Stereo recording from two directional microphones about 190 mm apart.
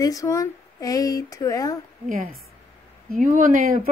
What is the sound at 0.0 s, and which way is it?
Speech, 20° left (ahead or behind).